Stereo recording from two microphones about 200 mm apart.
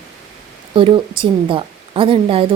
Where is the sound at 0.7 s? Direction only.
25° right (ahead or behind).